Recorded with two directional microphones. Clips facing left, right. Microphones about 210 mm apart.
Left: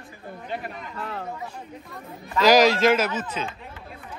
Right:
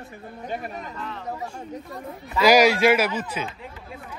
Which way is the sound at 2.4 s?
10° right (ahead or behind).